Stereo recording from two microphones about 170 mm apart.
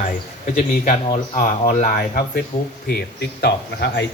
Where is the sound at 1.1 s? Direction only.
40° left (ahead or behind); by 2.4 s 60° left (ahead or behind).